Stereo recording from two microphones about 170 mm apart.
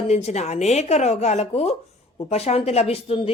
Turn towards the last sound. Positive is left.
turn(degrees=35)  # may be behind; listen again after turning